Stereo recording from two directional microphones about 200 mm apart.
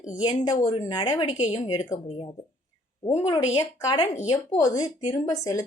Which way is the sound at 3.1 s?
20° left (ahead or behind).